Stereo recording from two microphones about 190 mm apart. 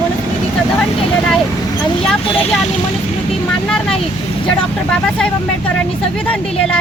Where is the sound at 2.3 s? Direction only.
Centre (ahead or behind).